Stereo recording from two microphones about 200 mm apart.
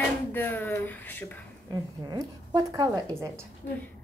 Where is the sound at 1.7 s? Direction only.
20° right (ahead or behind).